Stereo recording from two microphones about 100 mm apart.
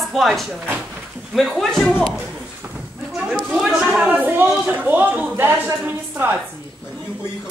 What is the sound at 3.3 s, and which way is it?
Speech, centre (ahead or behind).